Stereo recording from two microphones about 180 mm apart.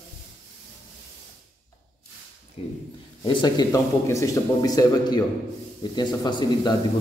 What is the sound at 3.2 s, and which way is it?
Speech, 25° left (ahead or behind).